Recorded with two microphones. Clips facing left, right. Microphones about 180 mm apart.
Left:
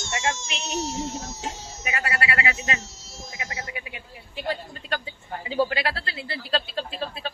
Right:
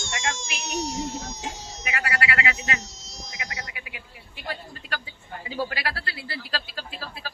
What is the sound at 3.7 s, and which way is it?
A man's voice, 30° left (ahead or behind).